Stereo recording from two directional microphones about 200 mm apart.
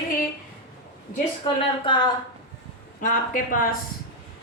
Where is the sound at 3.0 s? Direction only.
40° left (ahead or behind).